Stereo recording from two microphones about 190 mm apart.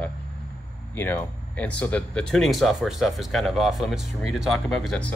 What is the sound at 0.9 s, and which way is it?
Speech, 10° left (ahead or behind).